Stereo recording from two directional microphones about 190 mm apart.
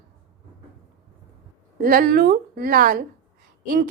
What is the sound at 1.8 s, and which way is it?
A woman's voice, 45° right (ahead or behind).